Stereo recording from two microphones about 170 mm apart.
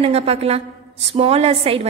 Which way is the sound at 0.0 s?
35° right (ahead or behind).